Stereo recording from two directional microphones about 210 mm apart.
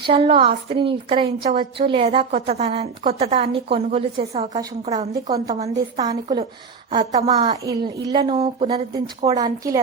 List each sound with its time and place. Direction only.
0.0 s a woman's voice: 25° right (ahead or behind)
5.1 s a woman's voice: 15° right (ahead or behind)
7.3 s a woman's voice: 20° right (ahead or behind)
8.2 s a woman's voice: 30° right (ahead or behind)
9.2 s a woman's voice: 15° right (ahead or behind)